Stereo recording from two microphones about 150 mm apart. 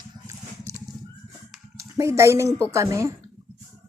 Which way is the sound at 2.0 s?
20° right (ahead or behind).